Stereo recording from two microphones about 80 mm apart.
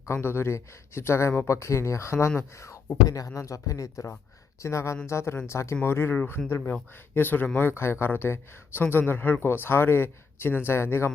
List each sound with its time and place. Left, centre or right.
0.1 s speech: left